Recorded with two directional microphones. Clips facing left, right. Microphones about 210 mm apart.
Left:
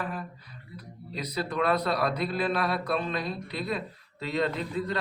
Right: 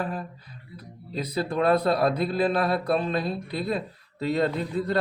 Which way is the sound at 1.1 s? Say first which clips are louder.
Right 4 dB; 30° right (ahead or behind).